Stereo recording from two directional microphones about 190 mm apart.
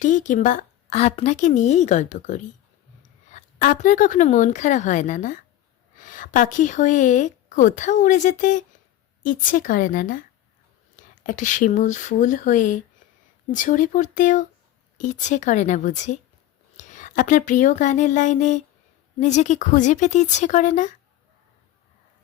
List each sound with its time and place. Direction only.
0.0 s a woman's voice: 40° left (ahead or behind)